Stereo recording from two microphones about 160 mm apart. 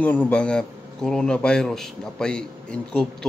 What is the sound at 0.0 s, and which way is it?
Speech, 10° left (ahead or behind).